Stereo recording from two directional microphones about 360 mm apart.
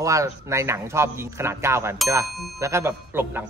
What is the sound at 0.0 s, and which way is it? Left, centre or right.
A man's voice, centre.